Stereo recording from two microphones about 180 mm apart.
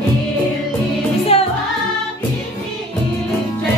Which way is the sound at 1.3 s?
35° left (ahead or behind).